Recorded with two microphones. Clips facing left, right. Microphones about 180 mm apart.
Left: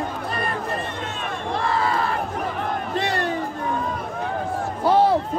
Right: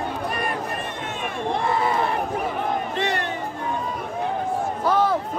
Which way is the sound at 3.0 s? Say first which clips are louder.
Left 3 dB; 35° left (ahead or behind).